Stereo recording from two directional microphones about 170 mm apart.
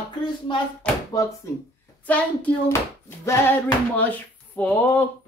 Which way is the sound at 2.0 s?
10° left (ahead or behind).